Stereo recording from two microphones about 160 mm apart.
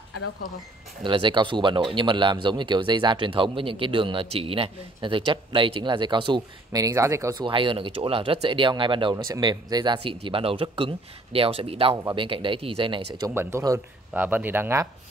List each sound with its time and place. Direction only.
1.0 s speech: 30° right (ahead or behind)
7.4 s speech: 30° right (ahead or behind)
11.9 s speech: 20° right (ahead or behind)
12.2 s speech: 30° right (ahead or behind)
13.3 s speech: 15° right (ahead or behind)